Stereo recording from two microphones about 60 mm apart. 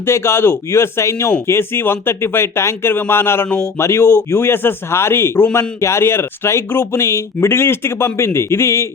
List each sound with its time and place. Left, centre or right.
0.0 s speech: left
0.7 s speech: left